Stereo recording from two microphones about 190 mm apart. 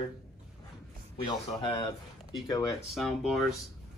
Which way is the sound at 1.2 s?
25° left (ahead or behind).